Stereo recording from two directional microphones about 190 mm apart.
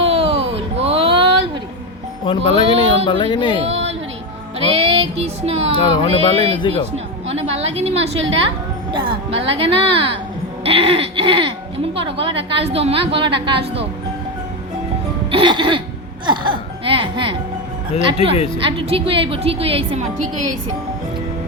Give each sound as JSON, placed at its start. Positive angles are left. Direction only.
{"t": 0.0, "sound": "a sound", "side_deg": -30}
{"t": 2.2, "sound": "speech", "side_deg": 25}
{"t": 4.7, "sound": "a woman's voice", "side_deg": -30}
{"t": 5.7, "sound": "speech", "side_deg": 25}
{"t": 6.1, "sound": "a woman's voice", "side_deg": -30}
{"t": 15.3, "sound": "a woman's voice", "side_deg": -25}
{"t": 18.6, "sound": "a woman's voice", "side_deg": -30}